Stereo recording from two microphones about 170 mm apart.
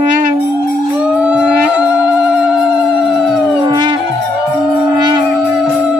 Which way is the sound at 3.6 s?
25° right (ahead or behind).